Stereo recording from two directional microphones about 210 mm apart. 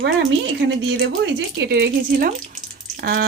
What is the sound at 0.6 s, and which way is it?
Speech, 55° right (ahead or behind).